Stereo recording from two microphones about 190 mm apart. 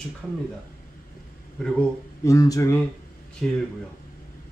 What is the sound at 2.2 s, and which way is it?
Speech, 15° left (ahead or behind).